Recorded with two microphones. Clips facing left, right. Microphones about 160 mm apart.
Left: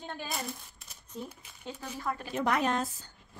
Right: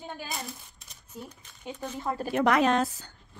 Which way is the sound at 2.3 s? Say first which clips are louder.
Right 6 dB; 90° right.